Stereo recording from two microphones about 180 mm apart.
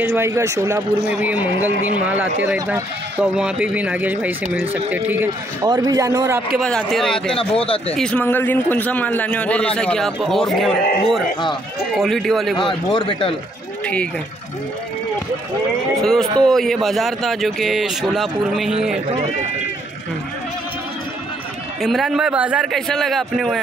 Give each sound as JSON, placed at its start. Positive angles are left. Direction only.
{"t": 0.0, "sound": "speech", "side_deg": -10}
{"t": 5.7, "sound": "a man's voice", "side_deg": -20}
{"t": 6.6, "sound": "a man's voice", "side_deg": 5}
{"t": 12.5, "sound": "a man's voice", "side_deg": 25}
{"t": 16.0, "sound": "speech", "side_deg": 0}
{"t": 21.8, "sound": "speech", "side_deg": 0}